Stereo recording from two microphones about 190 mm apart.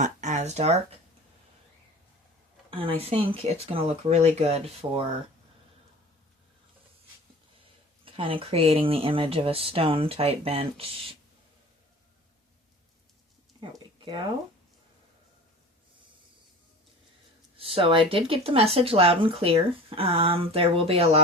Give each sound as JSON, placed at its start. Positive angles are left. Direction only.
{"t": 0.0, "sound": "speech", "side_deg": -40}
{"t": 2.6, "sound": "a sound", "side_deg": -30}
{"t": 3.0, "sound": "speech", "side_deg": -30}
{"t": 8.0, "sound": "speech", "side_deg": -30}
{"t": 13.6, "sound": "a sound", "side_deg": -25}
{"t": 17.6, "sound": "speech", "side_deg": -30}